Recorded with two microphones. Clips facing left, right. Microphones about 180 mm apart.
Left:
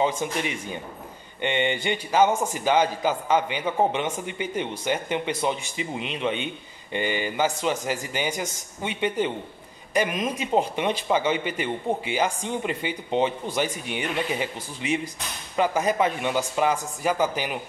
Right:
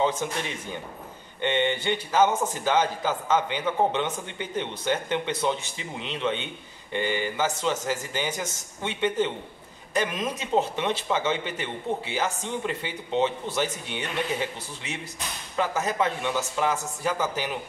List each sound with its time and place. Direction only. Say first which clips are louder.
0.0 s a man's voice: left 1 dB; 15° left (ahead or behind)